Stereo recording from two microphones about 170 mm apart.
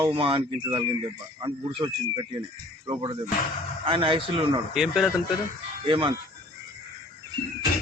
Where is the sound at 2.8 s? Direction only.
30° right (ahead or behind).